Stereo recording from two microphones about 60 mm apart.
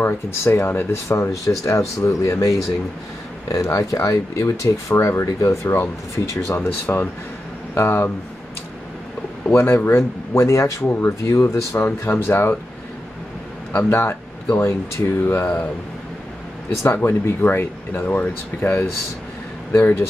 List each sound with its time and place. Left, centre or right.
0.5 s speech: left
1.0 s speech: left
5.2 s speech: left
5.7 s speech: left
9.5 s speech: left
12.3 s speech: left
13.7 s speech: left
17.0 s speech: left